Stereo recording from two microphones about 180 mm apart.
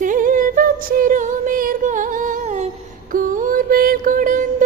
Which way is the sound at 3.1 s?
50° right (ahead or behind).